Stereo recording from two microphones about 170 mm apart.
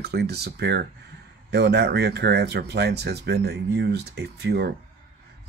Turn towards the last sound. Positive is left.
turn(degrees=-75)  # may be behind; listen again after turning